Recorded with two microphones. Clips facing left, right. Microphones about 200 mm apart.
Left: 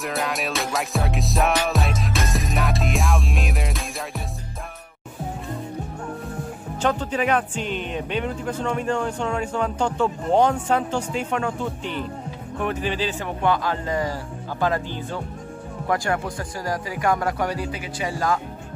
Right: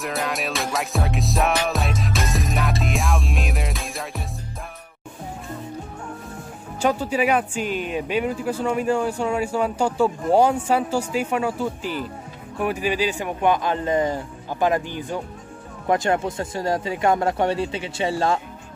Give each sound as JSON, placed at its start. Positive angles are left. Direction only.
{"t": 0.0, "sound": "music", "side_deg": 0}
{"t": 6.8, "sound": "speech", "side_deg": -10}